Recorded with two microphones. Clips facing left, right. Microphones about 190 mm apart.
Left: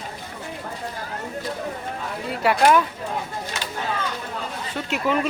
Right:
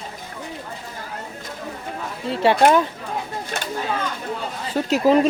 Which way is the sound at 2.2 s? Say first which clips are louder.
Right 3 dB; 25° right (ahead or behind).